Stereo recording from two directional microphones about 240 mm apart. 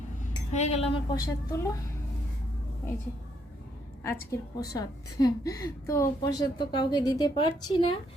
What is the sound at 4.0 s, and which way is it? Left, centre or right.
A woman's voice, centre.